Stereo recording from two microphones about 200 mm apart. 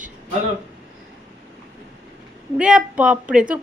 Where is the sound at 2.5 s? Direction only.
5° right (ahead or behind).